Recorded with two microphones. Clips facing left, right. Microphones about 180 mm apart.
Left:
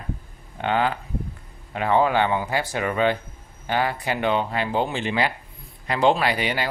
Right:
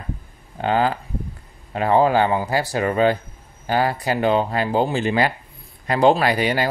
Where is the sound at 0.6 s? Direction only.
35° right (ahead or behind).